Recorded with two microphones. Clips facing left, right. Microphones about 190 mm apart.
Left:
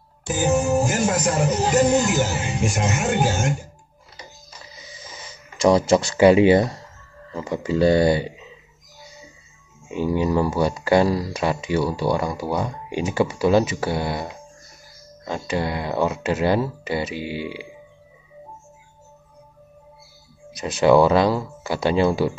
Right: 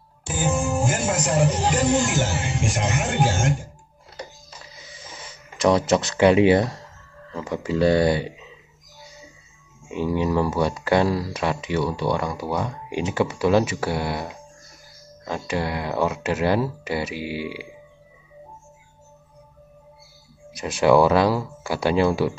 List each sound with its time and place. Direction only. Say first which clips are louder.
0.3 s music: left 4 dB; 40° left (ahead or behind)
1.5 s speech: left 3 dB; 40° left (ahead or behind)
5.6 s speech: left 2 dB; 5° right (ahead or behind)
9.9 s speech: left 1 dB; centre (ahead or behind)
15.2 s speech: left 1 dB; centre (ahead or behind)
20.6 s speech: left 1 dB; 5° right (ahead or behind)